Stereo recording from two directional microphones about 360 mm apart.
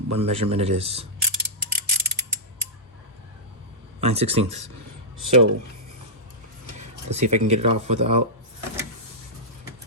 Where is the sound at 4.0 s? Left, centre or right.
Centre.